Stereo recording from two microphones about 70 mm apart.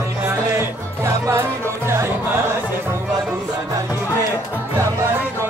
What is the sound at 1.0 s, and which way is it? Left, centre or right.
Music, right.